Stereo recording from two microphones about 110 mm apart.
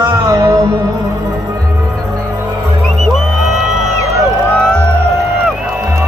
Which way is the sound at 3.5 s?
Centre (ahead or behind).